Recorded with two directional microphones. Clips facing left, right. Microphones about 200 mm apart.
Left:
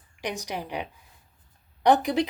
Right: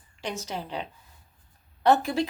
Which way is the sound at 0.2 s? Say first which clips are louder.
Left 1 dB; 15° left (ahead or behind).